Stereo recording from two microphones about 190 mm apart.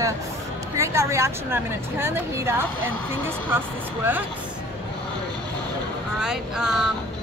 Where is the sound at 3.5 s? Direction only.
10° right (ahead or behind).